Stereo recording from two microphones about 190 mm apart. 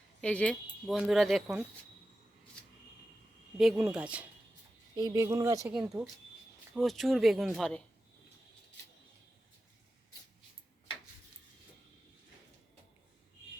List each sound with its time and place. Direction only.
0.2 s speech: 5° left (ahead or behind)
3.6 s speech: centre (ahead or behind)
4.9 s speech: 20° right (ahead or behind)
5.7 s speech: 5° right (ahead or behind)